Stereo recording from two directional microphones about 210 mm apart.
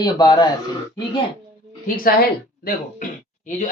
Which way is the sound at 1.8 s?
40° left (ahead or behind).